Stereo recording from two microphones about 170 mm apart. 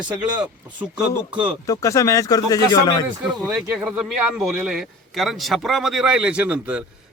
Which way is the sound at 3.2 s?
5° right (ahead or behind).